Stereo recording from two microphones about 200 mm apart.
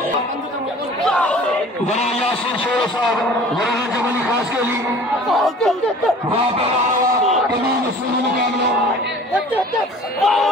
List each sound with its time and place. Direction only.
1.0 s chatter: 5° left (ahead or behind)
1.9 s a man's voice: 35° left (ahead or behind)
5.3 s chatter: centre (ahead or behind)
10.2 s chatter: centre (ahead or behind)